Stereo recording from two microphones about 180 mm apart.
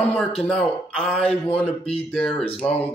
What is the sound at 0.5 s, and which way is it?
Speech, 5° left (ahead or behind).